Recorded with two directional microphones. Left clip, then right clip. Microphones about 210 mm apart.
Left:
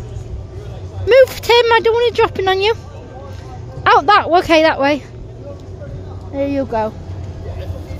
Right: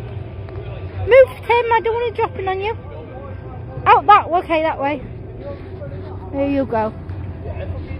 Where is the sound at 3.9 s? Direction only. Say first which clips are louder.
Left 1 dB; 45° left (ahead or behind).